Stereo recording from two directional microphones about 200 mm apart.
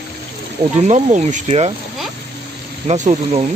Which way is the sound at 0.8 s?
35° right (ahead or behind).